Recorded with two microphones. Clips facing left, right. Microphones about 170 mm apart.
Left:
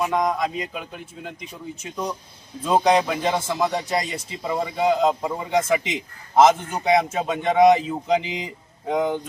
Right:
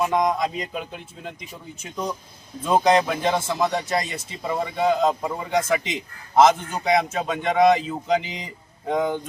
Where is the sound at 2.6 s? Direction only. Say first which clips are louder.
Even; 5° left (ahead or behind).